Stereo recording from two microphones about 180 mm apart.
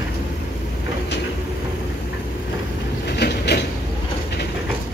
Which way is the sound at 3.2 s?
65° left (ahead or behind).